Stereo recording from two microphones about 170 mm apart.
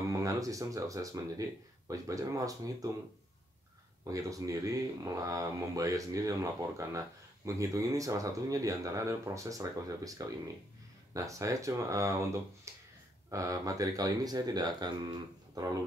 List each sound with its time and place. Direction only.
0.1 s speech: 20° right (ahead or behind)
4.1 s speech: 20° right (ahead or behind)
11.2 s speech: 20° right (ahead or behind)